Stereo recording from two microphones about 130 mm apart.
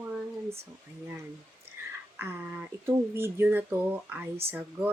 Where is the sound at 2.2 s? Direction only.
15° right (ahead or behind).